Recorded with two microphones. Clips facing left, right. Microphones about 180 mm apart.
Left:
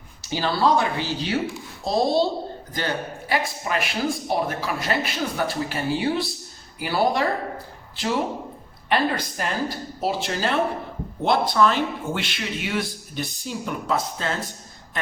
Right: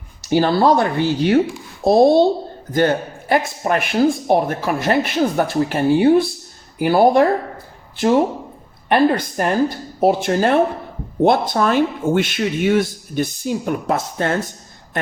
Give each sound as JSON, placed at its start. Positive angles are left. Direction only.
{"t": 0.3, "sound": "speech", "side_deg": -55}